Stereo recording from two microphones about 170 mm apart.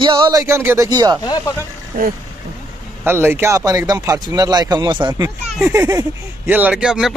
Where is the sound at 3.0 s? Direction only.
15° right (ahead or behind).